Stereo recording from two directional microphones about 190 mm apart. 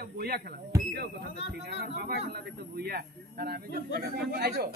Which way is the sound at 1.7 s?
55° right (ahead or behind).